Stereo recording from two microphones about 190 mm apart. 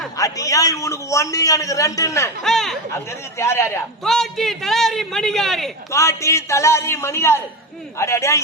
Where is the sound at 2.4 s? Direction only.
Centre (ahead or behind).